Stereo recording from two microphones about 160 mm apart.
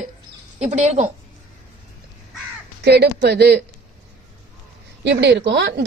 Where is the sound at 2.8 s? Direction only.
90° right.